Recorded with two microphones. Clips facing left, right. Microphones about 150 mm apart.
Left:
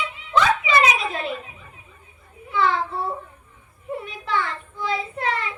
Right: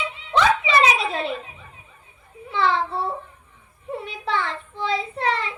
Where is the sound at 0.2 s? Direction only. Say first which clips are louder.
Right 1 dB; 30° right (ahead or behind).